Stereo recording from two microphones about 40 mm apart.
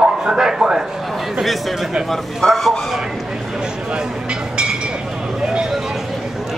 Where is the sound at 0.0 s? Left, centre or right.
Centre.